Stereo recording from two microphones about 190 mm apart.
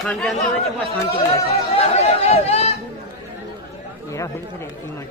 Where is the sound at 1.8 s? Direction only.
35° left (ahead or behind).